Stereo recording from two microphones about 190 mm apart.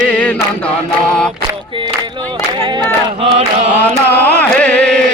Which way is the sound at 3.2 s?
30° right (ahead or behind).